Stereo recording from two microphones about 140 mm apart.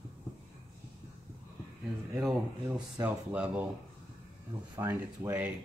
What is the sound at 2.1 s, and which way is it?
Speech, 5° right (ahead or behind).